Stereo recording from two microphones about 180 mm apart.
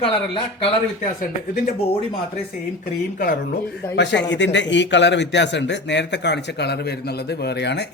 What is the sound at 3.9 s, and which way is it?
A man's voice, 75° left (ahead or behind).